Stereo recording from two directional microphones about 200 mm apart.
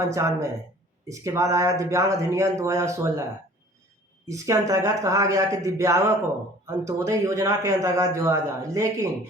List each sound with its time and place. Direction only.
0.1 s a man's voice: 15° right (ahead or behind)
4.3 s a man's voice: 15° right (ahead or behind)